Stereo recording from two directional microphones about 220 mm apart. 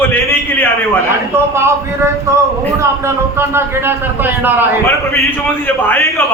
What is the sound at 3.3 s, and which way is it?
A man's voice, 10° right (ahead or behind).